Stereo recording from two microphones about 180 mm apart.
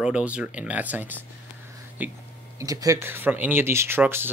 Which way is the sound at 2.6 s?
20° right (ahead or behind).